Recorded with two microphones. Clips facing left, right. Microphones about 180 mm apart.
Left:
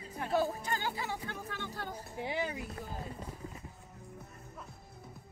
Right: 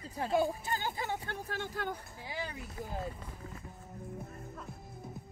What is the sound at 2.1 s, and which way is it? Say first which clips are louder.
Speech: left 6 dB; 20° left (ahead or behind).